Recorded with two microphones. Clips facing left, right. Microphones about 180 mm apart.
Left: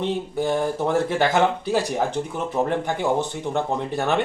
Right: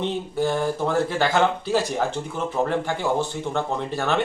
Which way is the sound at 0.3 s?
15° left (ahead or behind).